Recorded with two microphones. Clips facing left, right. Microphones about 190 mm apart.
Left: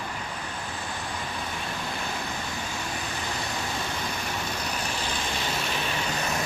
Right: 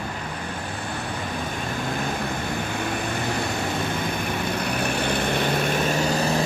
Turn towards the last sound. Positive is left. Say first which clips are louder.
# right 8 dB
turn(degrees=-35)  # may be behind; listen again after turning